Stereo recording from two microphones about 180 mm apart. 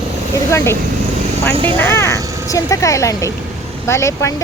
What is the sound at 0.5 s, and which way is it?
Speech, 15° left (ahead or behind).